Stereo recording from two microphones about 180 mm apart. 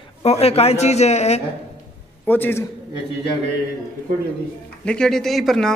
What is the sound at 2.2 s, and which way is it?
Speech, 10° left (ahead or behind).